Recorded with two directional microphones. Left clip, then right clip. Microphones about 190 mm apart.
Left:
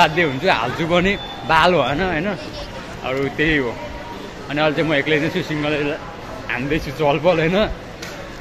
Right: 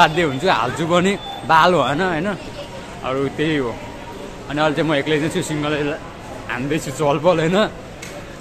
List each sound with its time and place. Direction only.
0.0 s speech: 20° right (ahead or behind)